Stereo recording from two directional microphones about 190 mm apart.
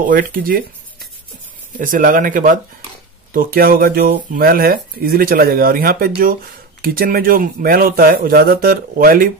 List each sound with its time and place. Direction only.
0.1 s speech: 50° right (ahead or behind)
1.8 s speech: 45° right (ahead or behind)